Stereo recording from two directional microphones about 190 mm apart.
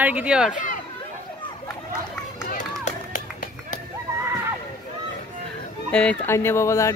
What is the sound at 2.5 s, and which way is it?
Run, 40° left (ahead or behind).